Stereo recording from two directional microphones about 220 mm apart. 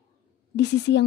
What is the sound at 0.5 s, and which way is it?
Speech, 50° left (ahead or behind).